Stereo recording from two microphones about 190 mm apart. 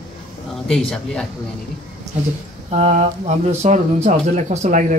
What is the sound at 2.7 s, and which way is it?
Speech, 40° right (ahead or behind).